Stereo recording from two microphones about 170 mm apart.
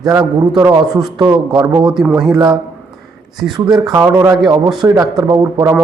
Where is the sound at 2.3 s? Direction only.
25° right (ahead or behind).